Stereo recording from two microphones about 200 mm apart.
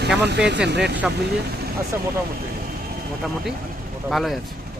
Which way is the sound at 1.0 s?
5° right (ahead or behind).